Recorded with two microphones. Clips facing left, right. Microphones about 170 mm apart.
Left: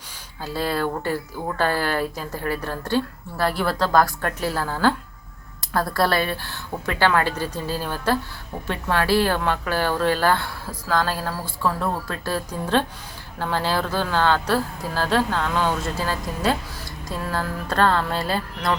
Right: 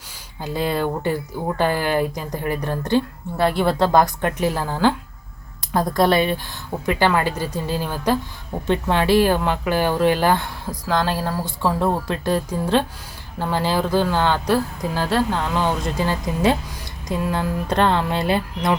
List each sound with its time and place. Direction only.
0.4 s speech: 15° right (ahead or behind)